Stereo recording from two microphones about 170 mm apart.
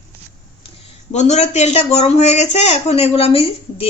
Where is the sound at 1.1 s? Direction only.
40° left (ahead or behind).